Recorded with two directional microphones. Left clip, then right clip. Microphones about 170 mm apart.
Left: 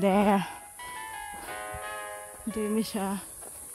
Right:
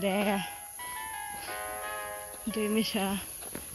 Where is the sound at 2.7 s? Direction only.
15° left (ahead or behind).